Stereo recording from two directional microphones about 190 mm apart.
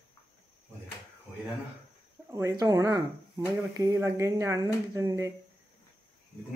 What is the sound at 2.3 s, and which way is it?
Speech, 15° right (ahead or behind).